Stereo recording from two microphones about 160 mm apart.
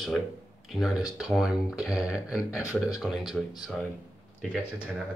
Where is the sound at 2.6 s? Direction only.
20° left (ahead or behind).